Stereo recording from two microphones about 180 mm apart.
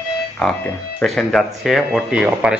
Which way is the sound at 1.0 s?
5° left (ahead or behind).